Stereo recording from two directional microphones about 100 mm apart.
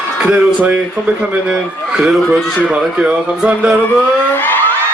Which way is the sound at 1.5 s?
5° right (ahead or behind).